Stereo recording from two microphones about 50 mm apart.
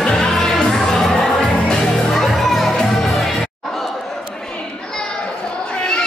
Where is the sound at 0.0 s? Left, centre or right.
Centre.